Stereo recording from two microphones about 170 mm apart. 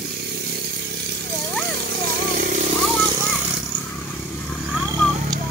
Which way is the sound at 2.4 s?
50° right (ahead or behind).